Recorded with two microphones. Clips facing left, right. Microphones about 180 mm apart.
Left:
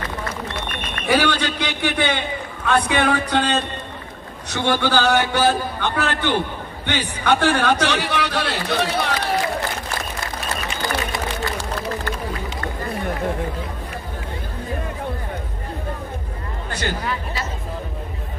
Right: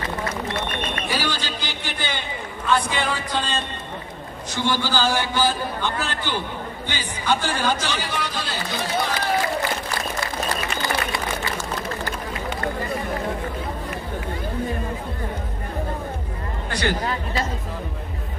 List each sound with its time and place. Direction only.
1.0 s a man's voice: 65° left (ahead or behind)